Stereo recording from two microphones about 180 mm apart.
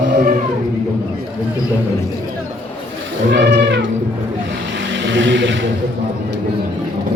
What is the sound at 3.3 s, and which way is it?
Music, 80° right.